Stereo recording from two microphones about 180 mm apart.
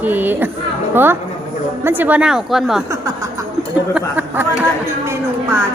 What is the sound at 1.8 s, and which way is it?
A woman's voice, 10° right (ahead or behind).